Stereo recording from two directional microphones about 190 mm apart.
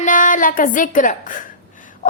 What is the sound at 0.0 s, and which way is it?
A woman's voice, 45° left (ahead or behind).